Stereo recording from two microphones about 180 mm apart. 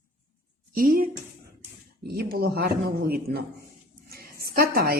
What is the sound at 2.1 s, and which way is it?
Speech, 55° right (ahead or behind).